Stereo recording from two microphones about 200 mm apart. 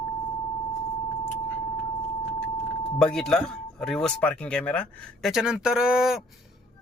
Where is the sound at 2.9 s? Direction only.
5° left (ahead or behind).